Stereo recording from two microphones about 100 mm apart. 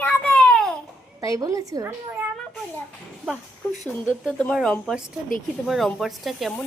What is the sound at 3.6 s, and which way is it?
Speech, 20° left (ahead or behind).